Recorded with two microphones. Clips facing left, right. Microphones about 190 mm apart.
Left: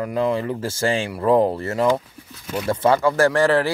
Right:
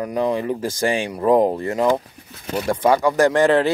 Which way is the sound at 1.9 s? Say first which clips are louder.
Right 1 dB; 60° right (ahead or behind).